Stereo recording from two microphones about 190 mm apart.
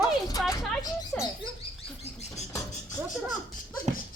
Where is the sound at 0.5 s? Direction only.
20° left (ahead or behind).